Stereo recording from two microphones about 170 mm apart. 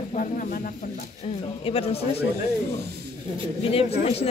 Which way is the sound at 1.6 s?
35° left (ahead or behind).